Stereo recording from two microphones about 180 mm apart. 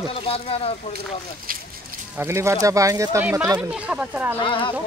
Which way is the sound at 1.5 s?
50° right (ahead or behind).